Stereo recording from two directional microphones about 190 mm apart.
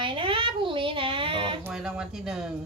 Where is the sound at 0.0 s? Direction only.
25° right (ahead or behind).